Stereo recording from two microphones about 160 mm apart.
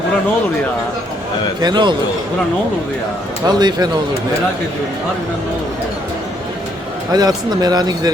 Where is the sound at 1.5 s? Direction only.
25° right (ahead or behind).